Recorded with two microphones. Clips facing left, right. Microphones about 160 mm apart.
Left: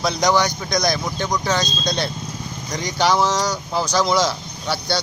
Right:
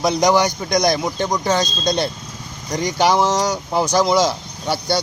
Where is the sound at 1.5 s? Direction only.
50° right (ahead or behind).